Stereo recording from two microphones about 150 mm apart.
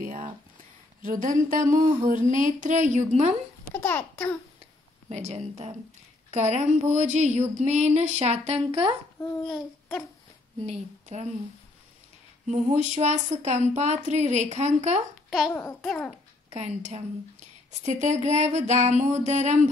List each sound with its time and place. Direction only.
0.0 s a sound: 65° right (ahead or behind)
1.0 s a woman's voice: 65° right (ahead or behind)
3.8 s a child's voice: 10° left (ahead or behind)
5.1 s a woman's voice: 45° right (ahead or behind)
9.5 s a sound: 5° left (ahead or behind)
10.6 s a woman's voice: 45° right (ahead or behind)
12.7 s a woman's voice: 50° right (ahead or behind)
15.2 s a child's voice: centre (ahead or behind)
16.5 s a woman's voice: 50° right (ahead or behind)